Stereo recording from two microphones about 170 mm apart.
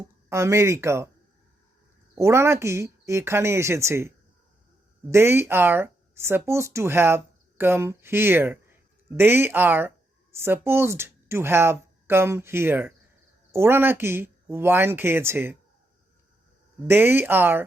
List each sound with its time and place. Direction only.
0.0 s speech: 15° right (ahead or behind)
2.1 s speech: 15° right (ahead or behind)
5.1 s a woman's voice: 15° right (ahead or behind)
16.8 s speech: 10° right (ahead or behind)